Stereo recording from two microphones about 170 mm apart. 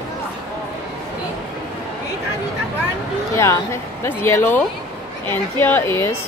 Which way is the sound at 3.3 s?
15° left (ahead or behind).